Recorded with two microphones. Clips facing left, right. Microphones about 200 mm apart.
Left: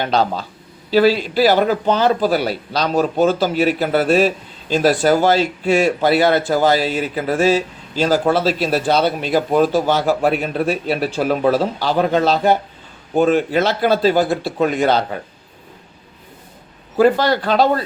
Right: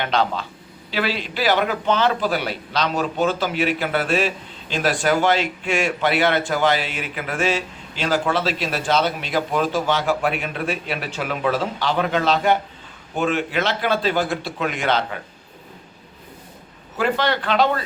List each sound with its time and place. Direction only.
0.0 s speech: 40° left (ahead or behind)
17.0 s speech: 40° left (ahead or behind)